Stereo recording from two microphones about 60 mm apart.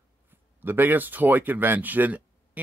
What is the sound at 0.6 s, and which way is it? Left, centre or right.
Speech, right.